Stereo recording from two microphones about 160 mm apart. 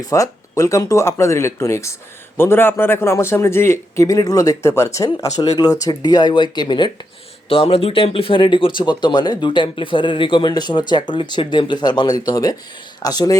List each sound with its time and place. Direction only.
0.0 s speech: 20° left (ahead or behind)